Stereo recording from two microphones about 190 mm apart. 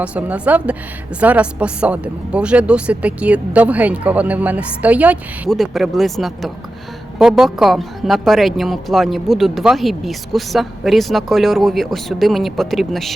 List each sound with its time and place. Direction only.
0.0 s speech: 5° right (ahead or behind)